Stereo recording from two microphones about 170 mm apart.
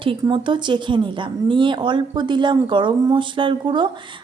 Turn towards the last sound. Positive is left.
turn(degrees=-30)  # may be behind; listen again after turning